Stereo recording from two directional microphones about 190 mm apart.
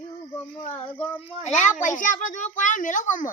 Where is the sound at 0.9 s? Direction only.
10° left (ahead or behind).